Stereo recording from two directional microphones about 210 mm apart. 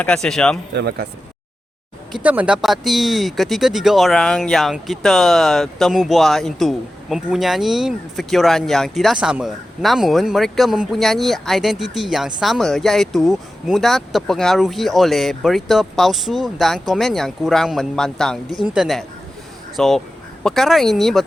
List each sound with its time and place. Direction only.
0.0 s speech: 5° left (ahead or behind)
0.8 s speech: 50° right (ahead or behind)
2.1 s speech: 5° right (ahead or behind)